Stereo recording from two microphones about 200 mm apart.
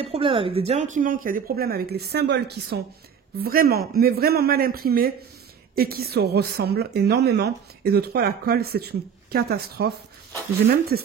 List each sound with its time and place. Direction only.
0.0 s a woman's voice: 30° right (ahead or behind); by 11.1 s 50° right (ahead or behind)